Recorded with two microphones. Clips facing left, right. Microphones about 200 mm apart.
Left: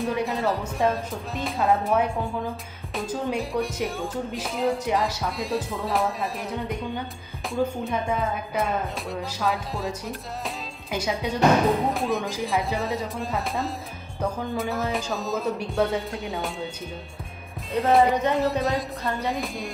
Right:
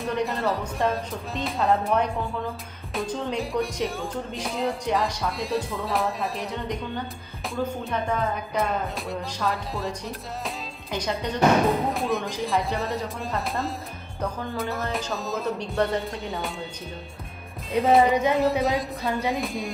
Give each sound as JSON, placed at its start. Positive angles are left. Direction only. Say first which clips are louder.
{"t": 0.0, "sound": "speech", "louder": "left 1 dB", "side_deg": 0}
{"t": 7.9, "sound": "speech", "louder": "even", "side_deg": 5}
{"t": 17.7, "sound": "speech", "louder": "right 1 dB", "side_deg": 0}